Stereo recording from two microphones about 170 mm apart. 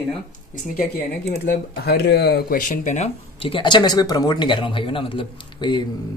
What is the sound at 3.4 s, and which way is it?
Speech, 30° left (ahead or behind).